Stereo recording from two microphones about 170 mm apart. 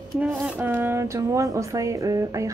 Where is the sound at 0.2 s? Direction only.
5° right (ahead or behind).